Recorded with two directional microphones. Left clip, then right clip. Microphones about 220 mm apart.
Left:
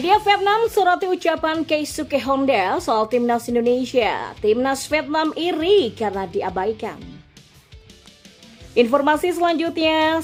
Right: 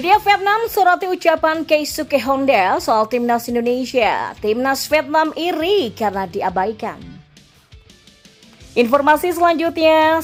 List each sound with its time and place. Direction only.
0.0 s a woman's voice: 15° right (ahead or behind)
8.7 s speech: 20° right (ahead or behind)